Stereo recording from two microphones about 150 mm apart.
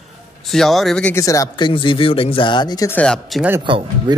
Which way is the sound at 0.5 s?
Centre (ahead or behind).